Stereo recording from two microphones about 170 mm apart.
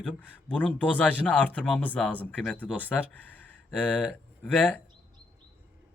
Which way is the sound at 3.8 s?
5° left (ahead or behind).